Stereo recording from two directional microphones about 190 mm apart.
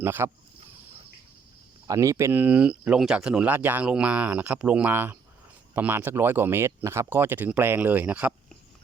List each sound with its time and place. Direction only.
0.0 s speech: 10° right (ahead or behind)
1.9 s speech: 15° right (ahead or behind)